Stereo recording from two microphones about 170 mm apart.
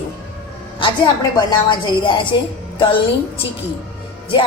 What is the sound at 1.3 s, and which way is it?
A woman's voice, 25° left (ahead or behind).